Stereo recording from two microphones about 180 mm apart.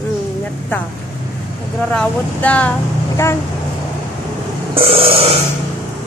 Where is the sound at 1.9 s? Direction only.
5° left (ahead or behind).